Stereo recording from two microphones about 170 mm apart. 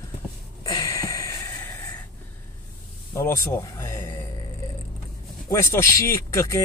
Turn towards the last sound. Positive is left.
turn(degrees=20)  # may be behind; listen again after turning